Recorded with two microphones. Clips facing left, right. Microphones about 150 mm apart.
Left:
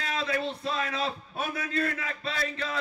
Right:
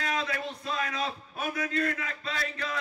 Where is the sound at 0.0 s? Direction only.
30° left (ahead or behind).